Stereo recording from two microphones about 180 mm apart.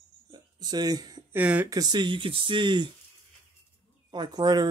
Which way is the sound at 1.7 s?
20° right (ahead or behind).